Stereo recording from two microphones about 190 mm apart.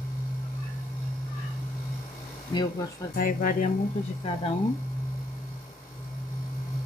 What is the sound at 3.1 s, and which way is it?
Speech, 45° left (ahead or behind).